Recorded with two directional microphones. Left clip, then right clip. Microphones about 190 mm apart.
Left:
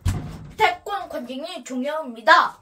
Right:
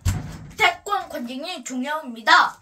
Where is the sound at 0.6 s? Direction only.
5° left (ahead or behind).